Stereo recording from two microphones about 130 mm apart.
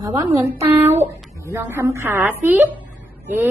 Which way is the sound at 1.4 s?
25° right (ahead or behind).